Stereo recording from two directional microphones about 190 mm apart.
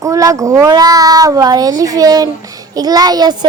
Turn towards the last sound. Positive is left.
turn(degrees=-20)  # may be behind; listen again after turning